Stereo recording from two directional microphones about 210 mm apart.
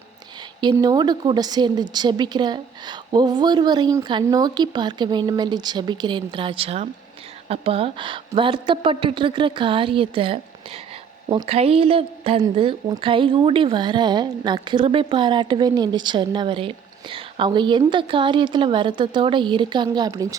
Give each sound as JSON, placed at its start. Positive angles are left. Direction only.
{"t": 0.6, "sound": "a woman's voice", "side_deg": -20}